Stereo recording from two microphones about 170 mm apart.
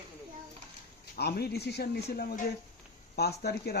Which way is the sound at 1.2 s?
70° left (ahead or behind).